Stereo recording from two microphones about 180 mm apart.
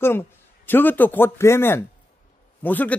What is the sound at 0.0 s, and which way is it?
A man's voice, 15° left (ahead or behind).